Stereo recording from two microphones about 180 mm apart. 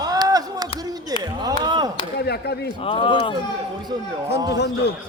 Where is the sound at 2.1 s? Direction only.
65° left (ahead or behind).